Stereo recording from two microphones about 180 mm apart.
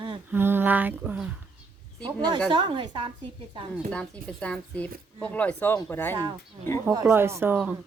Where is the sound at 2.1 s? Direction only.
25° right (ahead or behind).